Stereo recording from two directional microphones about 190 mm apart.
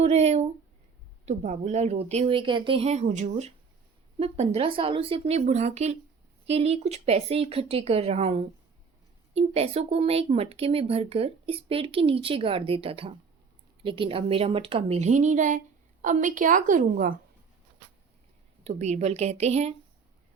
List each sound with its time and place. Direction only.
0.0 s a woman's voice: 35° right (ahead or behind)
18.6 s a woman's voice: 35° right (ahead or behind)